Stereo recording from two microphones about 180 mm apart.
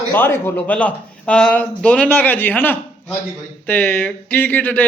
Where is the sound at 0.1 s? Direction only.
10° left (ahead or behind).